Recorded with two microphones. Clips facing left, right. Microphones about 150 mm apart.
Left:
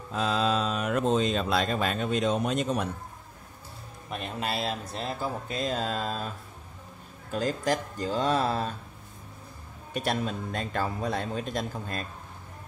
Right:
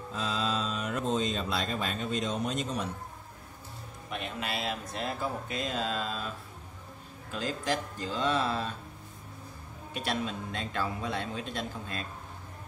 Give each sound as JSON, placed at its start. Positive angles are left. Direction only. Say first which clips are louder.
{"t": 0.1, "sound": "a sound", "louder": "left 6 dB", "side_deg": 65}
{"t": 4.1, "sound": "a man's voice", "louder": "left 3 dB", "side_deg": 35}
{"t": 9.9, "sound": "a man's voice", "louder": "left 4 dB", "side_deg": 45}